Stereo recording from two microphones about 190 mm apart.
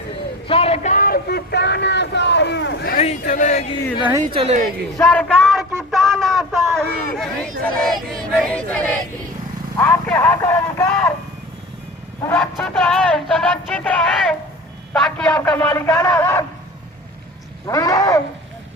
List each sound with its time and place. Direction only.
0.4 s speech: 30° left (ahead or behind); by 2.9 s 65° left (ahead or behind)
2.9 s speech: 40° left (ahead or behind)
4.4 s speech: 35° right (ahead or behind)
4.9 s a sound: 10° left (ahead or behind)
6.7 s a man's voice: centre (ahead or behind)
12.2 s a man's voice: 5° left (ahead or behind)
17.7 s a man's voice: 20° left (ahead or behind)